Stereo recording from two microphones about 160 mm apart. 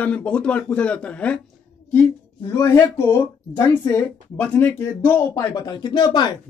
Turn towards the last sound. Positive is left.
turn(degrees=25)  # may be behind; listen again after turning